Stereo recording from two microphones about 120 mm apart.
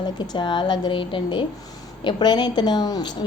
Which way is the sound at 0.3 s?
40° left (ahead or behind).